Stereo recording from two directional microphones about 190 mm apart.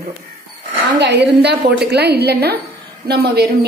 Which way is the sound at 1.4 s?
60° right (ahead or behind).